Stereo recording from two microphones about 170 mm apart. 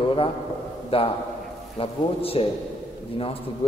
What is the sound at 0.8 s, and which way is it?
A man's voice, 35° left (ahead or behind).